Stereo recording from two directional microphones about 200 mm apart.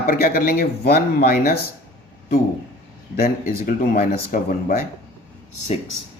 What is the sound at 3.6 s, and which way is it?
Speech, 45° left (ahead or behind).